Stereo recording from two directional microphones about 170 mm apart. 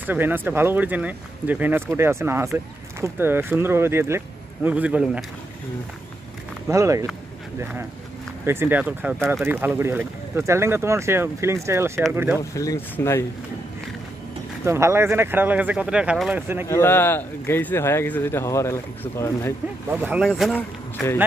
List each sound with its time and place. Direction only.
0.0 s speech: 10° right (ahead or behind)
6.7 s speech: 20° right (ahead or behind)
8.5 s speech: 10° right (ahead or behind)
12.4 s speech: 20° left (ahead or behind)
14.6 s speech: 15° right (ahead or behind)
16.6 s speech: 15° left (ahead or behind)
19.9 s speech: 10° right (ahead or behind)
20.2 s speech: centre (ahead or behind)